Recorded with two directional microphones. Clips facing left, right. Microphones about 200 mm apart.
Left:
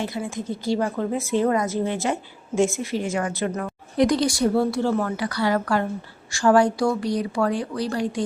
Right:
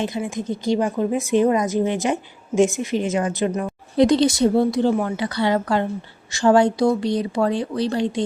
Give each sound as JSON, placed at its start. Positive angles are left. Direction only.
{"t": 0.0, "sound": "a woman's voice", "side_deg": -20}